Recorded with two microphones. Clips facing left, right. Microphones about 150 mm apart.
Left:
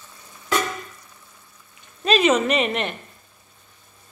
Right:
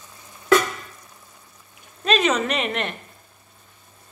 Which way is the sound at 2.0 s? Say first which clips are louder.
Left 2 dB; centre (ahead or behind).